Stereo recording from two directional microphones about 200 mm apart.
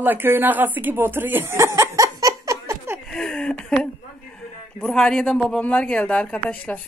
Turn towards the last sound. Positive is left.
turn(degrees=5)  # may be behind; listen again after turning